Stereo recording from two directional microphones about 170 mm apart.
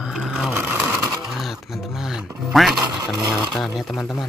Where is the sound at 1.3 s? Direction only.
Centre (ahead or behind).